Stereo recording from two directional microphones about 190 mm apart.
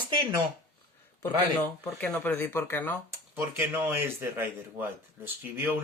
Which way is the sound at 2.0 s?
5° left (ahead or behind).